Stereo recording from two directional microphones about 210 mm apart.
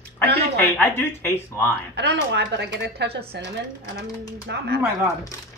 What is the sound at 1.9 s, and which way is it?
A woman's voice, 55° right (ahead or behind).